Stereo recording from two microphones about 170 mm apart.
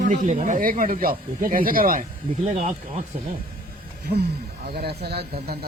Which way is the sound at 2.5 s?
45° right (ahead or behind).